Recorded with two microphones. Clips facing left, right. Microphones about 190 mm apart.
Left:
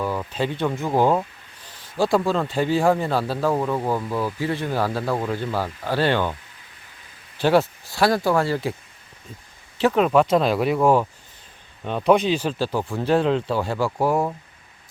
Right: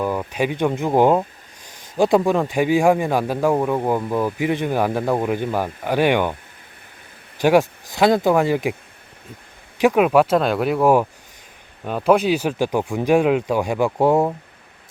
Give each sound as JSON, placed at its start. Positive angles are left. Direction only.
{"t": 0.0, "sound": "speech", "side_deg": -15}
{"t": 7.3, "sound": "speech", "side_deg": -15}
{"t": 9.7, "sound": "speech", "side_deg": -10}